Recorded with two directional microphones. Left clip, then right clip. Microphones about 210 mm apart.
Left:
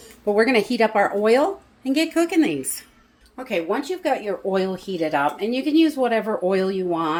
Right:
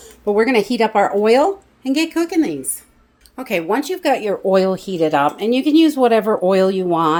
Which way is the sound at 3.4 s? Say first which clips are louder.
Right 5 dB; 40° right (ahead or behind).